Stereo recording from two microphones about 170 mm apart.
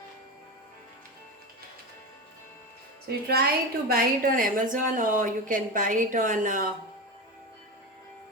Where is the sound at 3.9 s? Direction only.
55° right (ahead or behind).